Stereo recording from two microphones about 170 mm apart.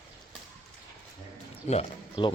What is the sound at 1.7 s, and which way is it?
Speech, 35° left (ahead or behind).